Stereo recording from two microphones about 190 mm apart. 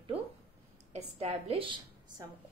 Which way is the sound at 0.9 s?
30° right (ahead or behind).